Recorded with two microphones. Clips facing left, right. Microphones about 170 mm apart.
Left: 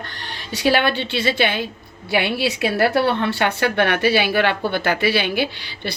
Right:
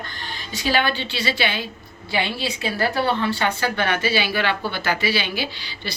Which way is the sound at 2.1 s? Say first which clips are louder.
Left 5 dB; 65° left (ahead or behind).